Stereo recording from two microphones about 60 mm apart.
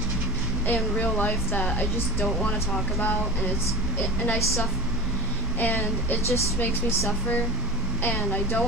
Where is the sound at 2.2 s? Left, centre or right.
Centre.